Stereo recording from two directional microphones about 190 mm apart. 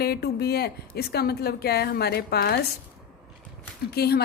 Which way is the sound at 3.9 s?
55° left (ahead or behind).